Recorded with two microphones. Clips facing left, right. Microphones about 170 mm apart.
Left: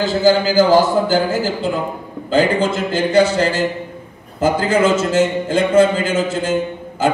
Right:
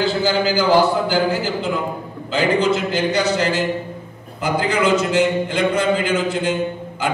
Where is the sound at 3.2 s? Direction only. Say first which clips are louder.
Left 8 dB; 30° left (ahead or behind).